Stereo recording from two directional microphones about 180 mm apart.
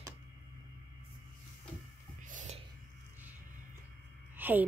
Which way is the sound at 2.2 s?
45° right (ahead or behind).